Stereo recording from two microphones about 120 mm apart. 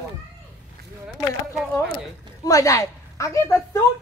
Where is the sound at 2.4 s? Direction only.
30° left (ahead or behind).